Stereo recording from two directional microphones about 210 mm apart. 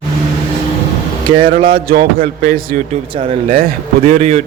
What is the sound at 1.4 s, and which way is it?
Speech, 45° right (ahead or behind).